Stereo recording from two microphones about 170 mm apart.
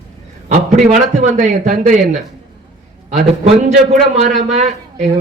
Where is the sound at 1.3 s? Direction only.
50° right (ahead or behind).